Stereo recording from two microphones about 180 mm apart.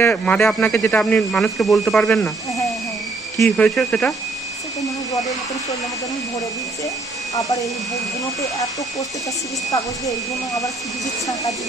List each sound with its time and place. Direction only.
0.0 s speech: 5° left (ahead or behind)
3.4 s speech: 5° left (ahead or behind)
9.7 s speech: 20° left (ahead or behind)